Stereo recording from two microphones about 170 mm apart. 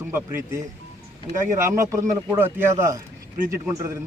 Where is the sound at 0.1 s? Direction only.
15° right (ahead or behind).